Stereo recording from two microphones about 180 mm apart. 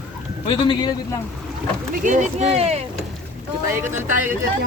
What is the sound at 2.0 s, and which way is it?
Speech, 40° right (ahead or behind).